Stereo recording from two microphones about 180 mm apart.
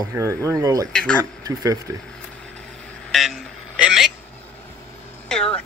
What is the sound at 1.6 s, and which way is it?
Speech, 20° right (ahead or behind).